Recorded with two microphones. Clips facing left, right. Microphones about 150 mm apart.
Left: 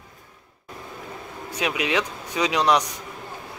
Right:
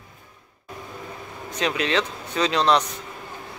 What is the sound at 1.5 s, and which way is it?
Speech, 10° left (ahead or behind).